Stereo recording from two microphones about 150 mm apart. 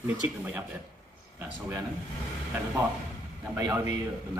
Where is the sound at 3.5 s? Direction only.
20° right (ahead or behind).